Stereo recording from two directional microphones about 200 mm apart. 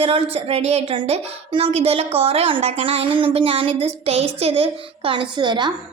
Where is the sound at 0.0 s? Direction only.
30° right (ahead or behind).